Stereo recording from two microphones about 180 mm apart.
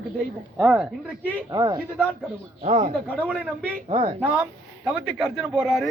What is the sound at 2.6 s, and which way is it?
Speech, 40° right (ahead or behind).